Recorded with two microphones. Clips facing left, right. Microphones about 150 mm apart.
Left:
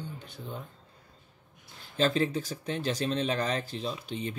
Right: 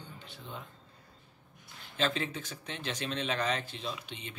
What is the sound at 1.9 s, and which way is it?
Speech, 35° left (ahead or behind).